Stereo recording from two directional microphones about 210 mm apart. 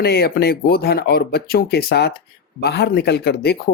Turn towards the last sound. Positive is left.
turn(degrees=50)  # may be behind; listen again after turning